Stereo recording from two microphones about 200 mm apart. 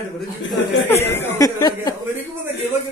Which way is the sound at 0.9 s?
10° left (ahead or behind).